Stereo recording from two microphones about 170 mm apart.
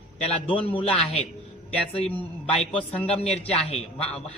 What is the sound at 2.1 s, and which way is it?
Speech, 10° left (ahead or behind).